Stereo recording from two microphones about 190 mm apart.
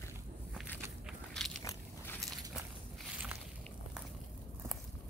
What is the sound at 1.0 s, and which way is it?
Walk, centre (ahead or behind).